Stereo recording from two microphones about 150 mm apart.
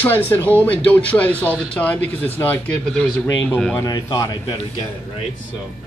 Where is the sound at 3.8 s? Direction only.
25° left (ahead or behind).